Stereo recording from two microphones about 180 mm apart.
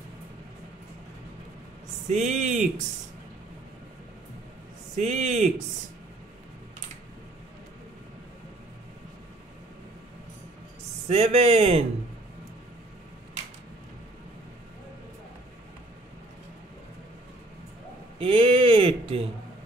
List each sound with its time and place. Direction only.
2.0 s a man's voice: 40° right (ahead or behind)
4.9 s a man's voice: 40° right (ahead or behind)
11.1 s a man's voice: 35° right (ahead or behind)
18.2 s speech: 30° right (ahead or behind)